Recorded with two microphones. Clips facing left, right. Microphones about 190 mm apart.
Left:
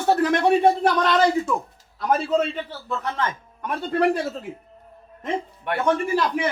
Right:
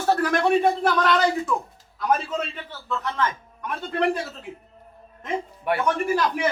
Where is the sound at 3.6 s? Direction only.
40° left (ahead or behind).